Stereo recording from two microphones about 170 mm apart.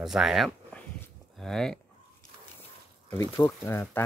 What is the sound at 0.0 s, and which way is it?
Speech, centre (ahead or behind).